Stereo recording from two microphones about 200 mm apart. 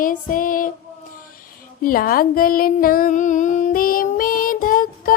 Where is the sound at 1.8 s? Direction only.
45° left (ahead or behind).